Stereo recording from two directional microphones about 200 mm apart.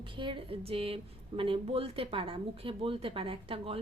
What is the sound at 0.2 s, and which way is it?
Speech, 25° right (ahead or behind).